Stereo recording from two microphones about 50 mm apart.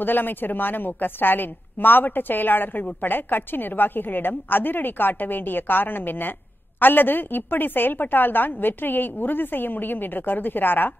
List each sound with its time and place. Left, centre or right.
0.0 s a woman's voice: left